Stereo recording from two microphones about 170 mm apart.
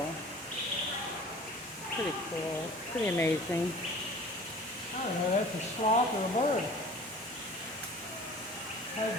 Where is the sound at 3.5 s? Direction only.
15° left (ahead or behind).